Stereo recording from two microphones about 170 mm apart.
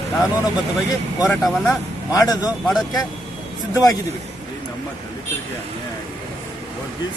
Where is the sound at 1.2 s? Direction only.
5° left (ahead or behind).